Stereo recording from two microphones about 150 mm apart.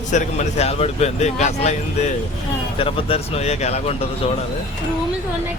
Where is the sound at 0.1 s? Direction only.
50° left (ahead or behind).